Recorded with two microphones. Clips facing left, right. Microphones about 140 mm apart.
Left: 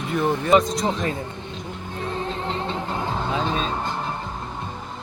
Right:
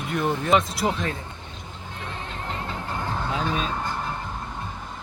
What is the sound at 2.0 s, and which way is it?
Music, 35° left (ahead or behind).